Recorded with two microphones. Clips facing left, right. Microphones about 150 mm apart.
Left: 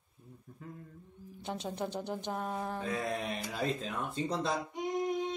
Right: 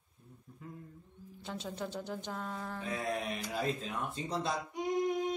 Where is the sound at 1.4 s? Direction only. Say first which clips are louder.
Left 3 dB; 20° left (ahead or behind).